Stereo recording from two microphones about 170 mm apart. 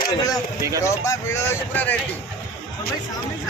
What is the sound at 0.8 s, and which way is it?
Speech, 15° left (ahead or behind).